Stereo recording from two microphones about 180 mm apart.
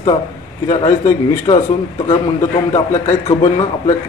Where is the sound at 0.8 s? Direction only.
20° left (ahead or behind).